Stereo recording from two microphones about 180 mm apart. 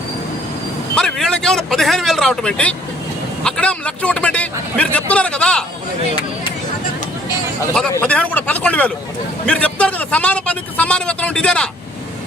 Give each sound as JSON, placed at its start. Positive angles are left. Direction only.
{"t": 0.9, "sound": "a man's voice", "side_deg": 5}
{"t": 7.9, "sound": "a man's voice", "side_deg": 10}